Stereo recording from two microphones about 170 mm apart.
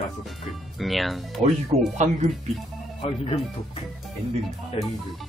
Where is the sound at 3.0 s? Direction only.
35° left (ahead or behind).